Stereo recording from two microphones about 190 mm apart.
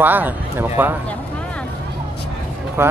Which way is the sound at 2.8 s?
10° right (ahead or behind).